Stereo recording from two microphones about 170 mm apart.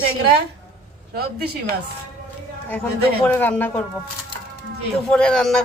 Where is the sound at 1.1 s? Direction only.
65° right (ahead or behind).